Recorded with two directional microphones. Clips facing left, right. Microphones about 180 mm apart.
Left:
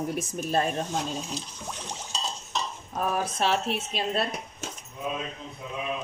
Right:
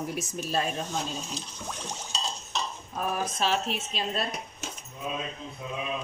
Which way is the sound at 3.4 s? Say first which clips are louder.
Left 2 dB; 60° left (ahead or behind).